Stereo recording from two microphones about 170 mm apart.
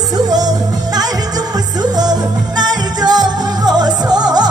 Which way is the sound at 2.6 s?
25° right (ahead or behind).